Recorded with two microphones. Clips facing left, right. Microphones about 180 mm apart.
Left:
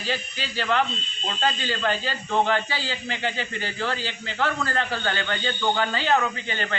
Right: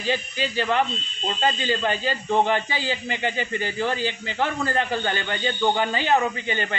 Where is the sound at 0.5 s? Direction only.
15° right (ahead or behind).